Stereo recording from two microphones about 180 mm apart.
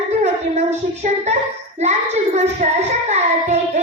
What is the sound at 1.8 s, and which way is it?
Music, 40° right (ahead or behind).